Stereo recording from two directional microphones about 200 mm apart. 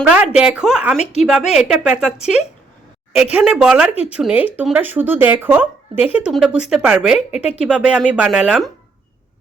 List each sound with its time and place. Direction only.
0.0 s speech: 5° right (ahead or behind)